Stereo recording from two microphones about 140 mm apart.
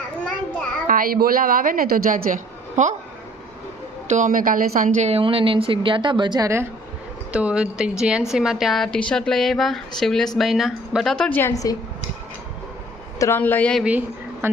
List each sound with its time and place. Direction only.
0.9 s a woman's voice: 90° right; by 2.9 s 65° right (ahead or behind)
4.1 s a woman's voice: 70° right (ahead or behind)
5.0 s speech: 45° right (ahead or behind)
7.3 s a woman's voice: 5° right (ahead or behind); by 11.8 s 25° left (ahead or behind)
13.1 s speech: 20° left (ahead or behind)
14.4 s speech: 15° right (ahead or behind)